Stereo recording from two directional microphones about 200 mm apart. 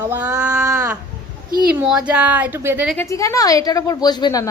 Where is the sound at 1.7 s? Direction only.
5° right (ahead or behind).